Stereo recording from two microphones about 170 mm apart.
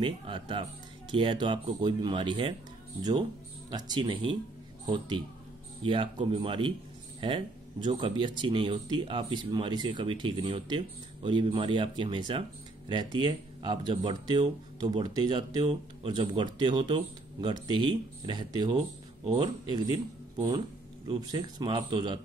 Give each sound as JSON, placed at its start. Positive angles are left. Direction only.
{"t": 0.0, "sound": "speech", "side_deg": -30}